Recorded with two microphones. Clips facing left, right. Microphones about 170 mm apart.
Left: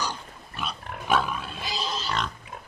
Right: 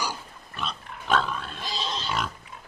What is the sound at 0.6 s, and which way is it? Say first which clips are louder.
Pig: left 1 dB; 10° left (ahead or behind).